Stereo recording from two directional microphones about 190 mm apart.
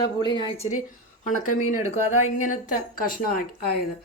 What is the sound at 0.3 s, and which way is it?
Speech, 25° left (ahead or behind).